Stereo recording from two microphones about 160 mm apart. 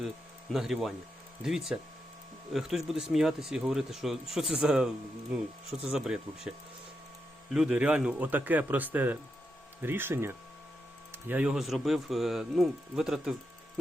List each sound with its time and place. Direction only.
0.5 s speech: centre (ahead or behind)
7.5 s speech: 5° right (ahead or behind)